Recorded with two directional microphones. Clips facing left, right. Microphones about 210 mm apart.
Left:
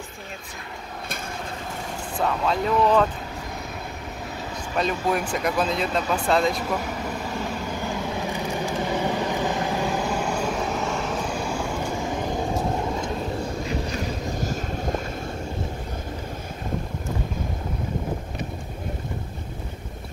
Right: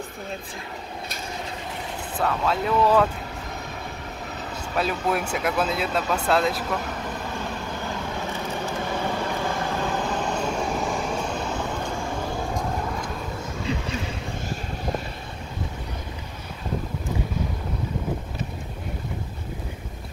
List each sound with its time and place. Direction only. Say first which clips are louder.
2.1 s speech: left 1 dB; centre (ahead or behind)
4.7 s speech: left 1 dB; 5° right (ahead or behind)
7.3 s vehicle: left 2 dB; 15° left (ahead or behind)